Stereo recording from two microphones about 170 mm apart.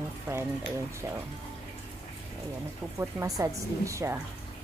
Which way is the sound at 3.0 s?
15° right (ahead or behind).